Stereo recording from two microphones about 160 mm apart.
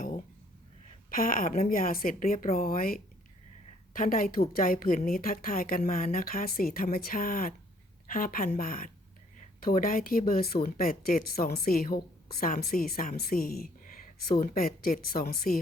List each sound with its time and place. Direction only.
1.1 s speech: 60° left (ahead or behind)